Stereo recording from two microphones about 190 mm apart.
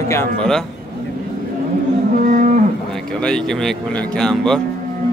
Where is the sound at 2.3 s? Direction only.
45° right (ahead or behind).